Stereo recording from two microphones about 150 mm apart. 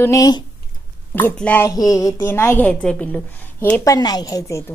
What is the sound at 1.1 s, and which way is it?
Speech, 10° left (ahead or behind).